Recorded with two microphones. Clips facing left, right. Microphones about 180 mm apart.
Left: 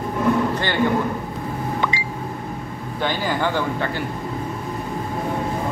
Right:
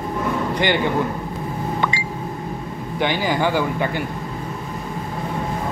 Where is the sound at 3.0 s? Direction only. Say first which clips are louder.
Right 2 dB; 15° right (ahead or behind).